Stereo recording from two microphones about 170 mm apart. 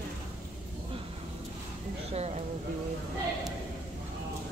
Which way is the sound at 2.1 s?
40° right (ahead or behind).